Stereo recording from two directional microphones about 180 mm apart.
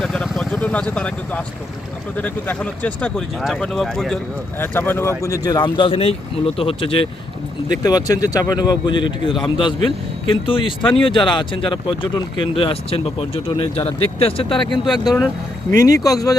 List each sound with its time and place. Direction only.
0.0 s vehicle: 5° left (ahead or behind)
2.1 s speech: 10° left (ahead or behind); by 14.9 s 25° left (ahead or behind)
14.9 s speech: centre (ahead or behind)
15.7 s speech: 20° left (ahead or behind)